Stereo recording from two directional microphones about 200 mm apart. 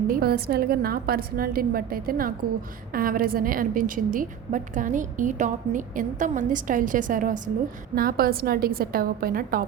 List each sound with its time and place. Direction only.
0.1 s a woman's voice: 50° right (ahead or behind)